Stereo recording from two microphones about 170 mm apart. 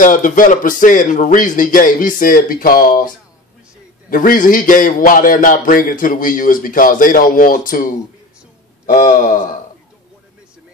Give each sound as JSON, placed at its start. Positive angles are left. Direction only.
{"t": 0.0, "sound": "a man's voice", "side_deg": 50}
{"t": 4.1, "sound": "a man's voice", "side_deg": 55}